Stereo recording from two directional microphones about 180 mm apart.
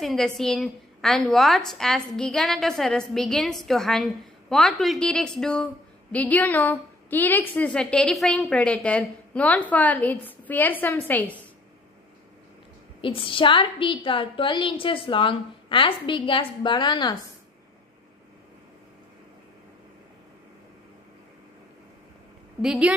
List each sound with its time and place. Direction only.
0.0 s a woman's voice: centre (ahead or behind)
13.0 s a woman's voice: 30° left (ahead or behind)
22.6 s a woman's voice: 5° right (ahead or behind)